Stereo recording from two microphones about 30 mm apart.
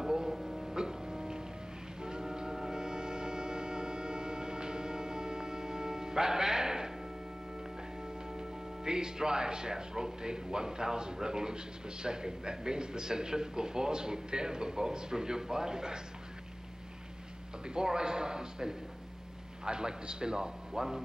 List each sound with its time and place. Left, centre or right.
0.0 s music: centre
8.3 s speech: right
17.6 s speech: right